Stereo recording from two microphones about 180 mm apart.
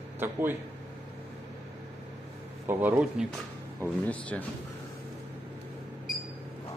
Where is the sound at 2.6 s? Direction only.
10° right (ahead or behind).